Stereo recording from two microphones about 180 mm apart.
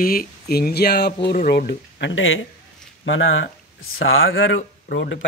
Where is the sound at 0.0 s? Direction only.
55° left (ahead or behind).